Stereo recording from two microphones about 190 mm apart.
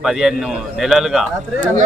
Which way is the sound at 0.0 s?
Centre (ahead or behind).